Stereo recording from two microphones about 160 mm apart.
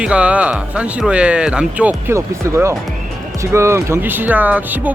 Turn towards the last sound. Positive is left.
turn(degrees=-10)  # may be behind; listen again after turning